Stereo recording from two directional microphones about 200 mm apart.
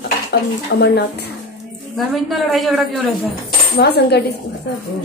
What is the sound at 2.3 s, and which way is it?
A man's voice, centre (ahead or behind).